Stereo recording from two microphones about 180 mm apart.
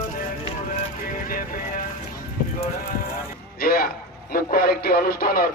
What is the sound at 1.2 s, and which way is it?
Vehicle, 50° left (ahead or behind).